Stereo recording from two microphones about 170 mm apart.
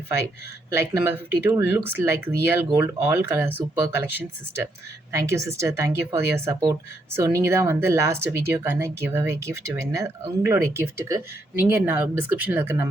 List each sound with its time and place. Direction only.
0.7 s speech: 15° right (ahead or behind)